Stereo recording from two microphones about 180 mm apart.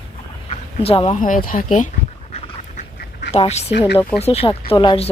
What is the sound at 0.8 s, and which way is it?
Speech, 30° left (ahead or behind).